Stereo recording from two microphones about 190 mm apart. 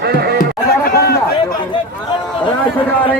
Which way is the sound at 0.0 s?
55° right (ahead or behind).